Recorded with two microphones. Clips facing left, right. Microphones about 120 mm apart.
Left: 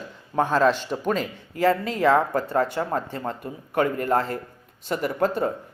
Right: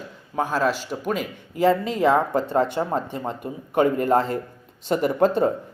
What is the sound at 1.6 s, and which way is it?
Speech, 20° right (ahead or behind).